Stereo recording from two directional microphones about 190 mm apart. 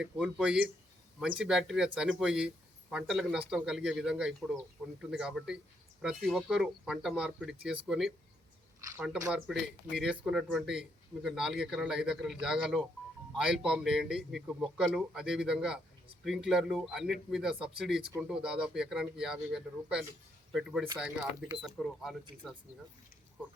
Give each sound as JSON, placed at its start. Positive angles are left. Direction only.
{"t": 0.0, "sound": "a man's voice", "side_deg": -5}
{"t": 8.8, "sound": "speech", "side_deg": -15}
{"t": 9.5, "sound": "a man's voice", "side_deg": 0}